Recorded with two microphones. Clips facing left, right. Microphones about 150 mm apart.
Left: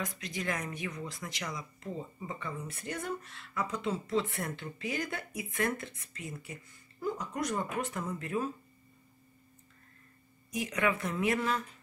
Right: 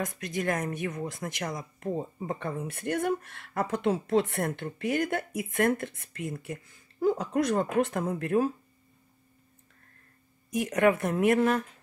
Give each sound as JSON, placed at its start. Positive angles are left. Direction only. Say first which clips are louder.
{"t": 0.0, "sound": "speech", "louder": "right 6 dB", "side_deg": -50}
{"t": 10.5, "sound": "speech", "louder": "right 7 dB", "side_deg": -55}